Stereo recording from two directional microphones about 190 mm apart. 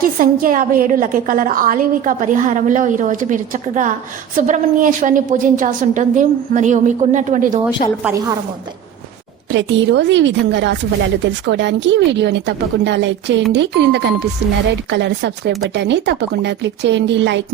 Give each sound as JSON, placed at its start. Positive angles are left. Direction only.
{"t": 0.0, "sound": "a woman's voice", "side_deg": -45}
{"t": 8.0, "sound": "a woman's voice", "side_deg": -15}
{"t": 9.5, "sound": "speech", "side_deg": -70}